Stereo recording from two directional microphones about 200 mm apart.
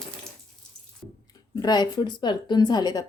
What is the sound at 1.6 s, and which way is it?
Speech, 20° left (ahead or behind).